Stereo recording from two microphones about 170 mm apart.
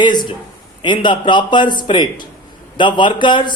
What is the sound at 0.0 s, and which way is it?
A man's voice, 25° left (ahead or behind).